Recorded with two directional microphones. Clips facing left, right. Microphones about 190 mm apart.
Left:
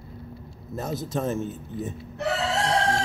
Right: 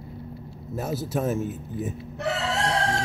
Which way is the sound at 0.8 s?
5° right (ahead or behind).